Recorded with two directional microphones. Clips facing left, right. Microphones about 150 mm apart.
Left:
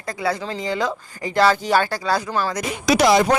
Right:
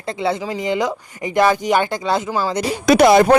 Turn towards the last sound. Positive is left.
turn(degrees=-55)  # may be behind; listen again after turning